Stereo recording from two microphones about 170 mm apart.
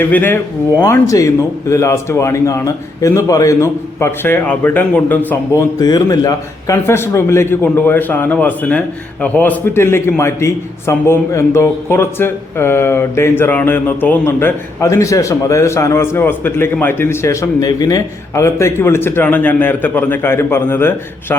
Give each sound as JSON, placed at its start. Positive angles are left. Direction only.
{"t": 0.0, "sound": "a man's voice", "side_deg": 10}
{"t": 5.8, "sound": "a man's voice", "side_deg": 25}